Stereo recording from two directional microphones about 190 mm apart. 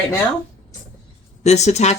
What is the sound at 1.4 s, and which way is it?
Speech, 35° left (ahead or behind).